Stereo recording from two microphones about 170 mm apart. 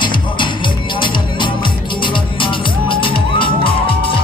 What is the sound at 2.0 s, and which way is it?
Music, 30° left (ahead or behind).